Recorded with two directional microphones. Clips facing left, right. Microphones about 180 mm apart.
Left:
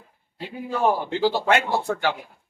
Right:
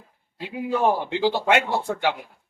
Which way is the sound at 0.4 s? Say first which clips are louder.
Right 1 dB; 15° right (ahead or behind).